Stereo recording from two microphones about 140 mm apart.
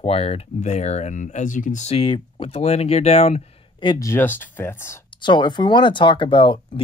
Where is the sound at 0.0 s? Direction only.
45° left (ahead or behind).